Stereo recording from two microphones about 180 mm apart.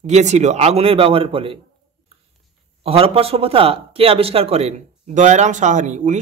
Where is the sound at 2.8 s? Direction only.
35° right (ahead or behind).